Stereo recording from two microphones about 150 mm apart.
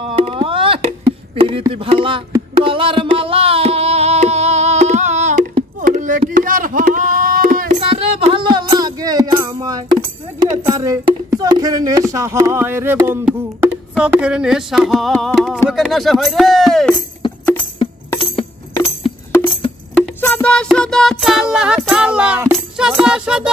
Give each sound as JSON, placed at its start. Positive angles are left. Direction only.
{"t": 0.0, "sound": "music", "side_deg": -35}
{"t": 1.3, "sound": "speech", "side_deg": -40}
{"t": 1.7, "sound": "music", "side_deg": -35}
{"t": 5.8, "sound": "a sound", "side_deg": -60}
{"t": 7.9, "sound": "music", "side_deg": -35}
{"t": 10.7, "sound": "speech", "side_deg": -25}
{"t": 13.6, "sound": "music", "side_deg": -10}
{"t": 18.2, "sound": "music", "side_deg": 40}
{"t": 19.9, "sound": "music", "side_deg": 10}